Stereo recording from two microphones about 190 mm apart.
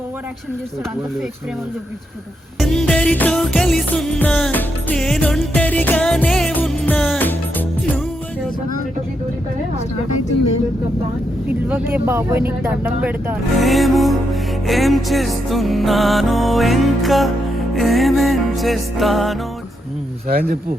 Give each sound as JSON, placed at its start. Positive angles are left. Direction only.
{"t": 2.6, "sound": "music", "side_deg": 5}
{"t": 11.4, "sound": "speech", "side_deg": -10}
{"t": 14.7, "sound": "music", "side_deg": 0}
{"t": 20.2, "sound": "speech", "side_deg": -50}